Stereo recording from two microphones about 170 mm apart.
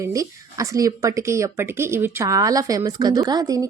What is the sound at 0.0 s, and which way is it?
Speech, 20° right (ahead or behind).